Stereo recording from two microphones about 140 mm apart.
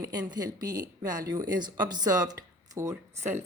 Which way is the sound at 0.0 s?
30° right (ahead or behind).